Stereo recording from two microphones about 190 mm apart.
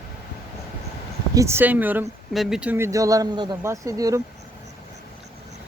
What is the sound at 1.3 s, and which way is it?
Speech, 15° right (ahead or behind).